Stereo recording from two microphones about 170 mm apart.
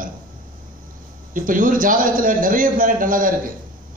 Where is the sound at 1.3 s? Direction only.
55° right (ahead or behind).